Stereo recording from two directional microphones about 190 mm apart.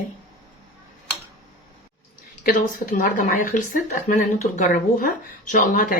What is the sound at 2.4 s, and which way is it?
A woman's voice, 50° left (ahead or behind).